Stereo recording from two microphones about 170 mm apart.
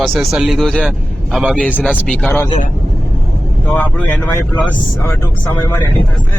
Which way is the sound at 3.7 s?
10° left (ahead or behind).